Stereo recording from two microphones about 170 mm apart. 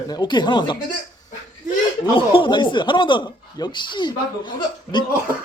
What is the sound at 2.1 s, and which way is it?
A man's voice, 30° left (ahead or behind).